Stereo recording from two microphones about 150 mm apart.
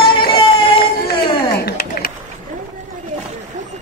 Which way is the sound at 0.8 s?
90° left.